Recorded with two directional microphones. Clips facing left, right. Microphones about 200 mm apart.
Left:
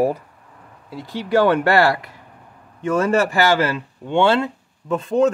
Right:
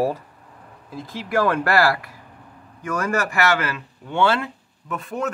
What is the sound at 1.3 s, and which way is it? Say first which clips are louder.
Speech: left 4 dB; 25° left (ahead or behind).